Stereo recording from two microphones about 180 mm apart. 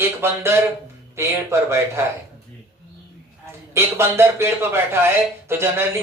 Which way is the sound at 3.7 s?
15° right (ahead or behind).